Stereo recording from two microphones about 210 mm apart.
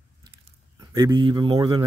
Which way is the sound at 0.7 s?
20° right (ahead or behind).